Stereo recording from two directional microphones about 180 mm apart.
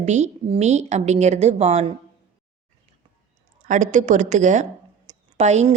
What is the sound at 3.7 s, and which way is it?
A woman's voice, 45° right (ahead or behind).